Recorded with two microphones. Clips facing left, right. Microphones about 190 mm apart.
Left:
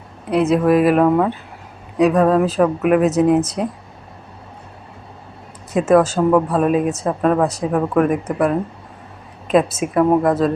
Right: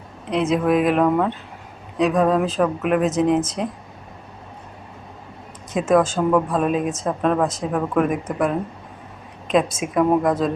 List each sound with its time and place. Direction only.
0.3 s speech: 5° left (ahead or behind)
5.7 s speech: 5° left (ahead or behind)